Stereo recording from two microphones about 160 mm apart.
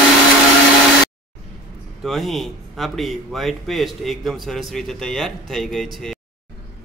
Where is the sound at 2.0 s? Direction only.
Centre (ahead or behind).